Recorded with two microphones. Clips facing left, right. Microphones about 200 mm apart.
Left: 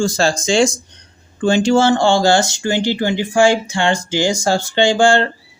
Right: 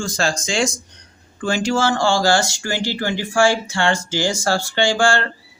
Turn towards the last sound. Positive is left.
turn(degrees=20)  # may be behind; listen again after turning